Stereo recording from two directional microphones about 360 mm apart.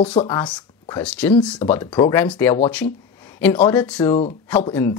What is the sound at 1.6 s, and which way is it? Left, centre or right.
Speech, centre.